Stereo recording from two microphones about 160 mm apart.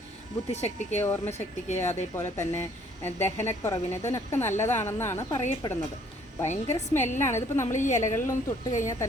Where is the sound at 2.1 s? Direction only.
15° left (ahead or behind).